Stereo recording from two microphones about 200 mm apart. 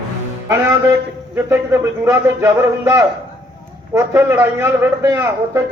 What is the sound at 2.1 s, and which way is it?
A man's voice, 15° right (ahead or behind).